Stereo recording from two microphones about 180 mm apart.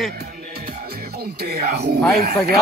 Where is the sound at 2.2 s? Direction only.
55° right (ahead or behind).